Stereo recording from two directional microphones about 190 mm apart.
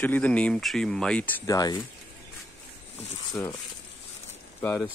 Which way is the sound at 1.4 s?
20° left (ahead or behind).